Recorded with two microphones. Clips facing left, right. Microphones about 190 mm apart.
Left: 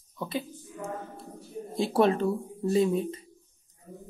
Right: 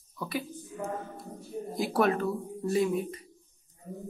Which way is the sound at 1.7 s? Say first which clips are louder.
Left 3 dB; 25° left (ahead or behind).